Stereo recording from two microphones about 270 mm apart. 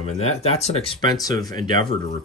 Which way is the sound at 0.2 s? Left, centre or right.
Left.